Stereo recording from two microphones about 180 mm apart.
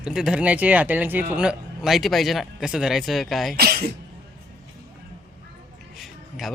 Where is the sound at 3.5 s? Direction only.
60° right (ahead or behind).